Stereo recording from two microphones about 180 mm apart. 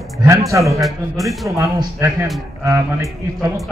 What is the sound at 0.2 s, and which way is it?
Speech, 15° right (ahead or behind).